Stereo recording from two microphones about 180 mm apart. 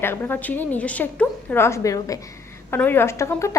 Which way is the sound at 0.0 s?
10° left (ahead or behind).